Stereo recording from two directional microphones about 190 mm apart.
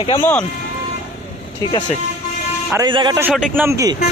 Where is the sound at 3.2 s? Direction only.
10° right (ahead or behind).